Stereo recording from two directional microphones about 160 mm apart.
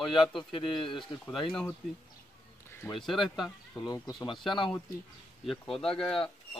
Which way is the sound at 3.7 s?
25° left (ahead or behind).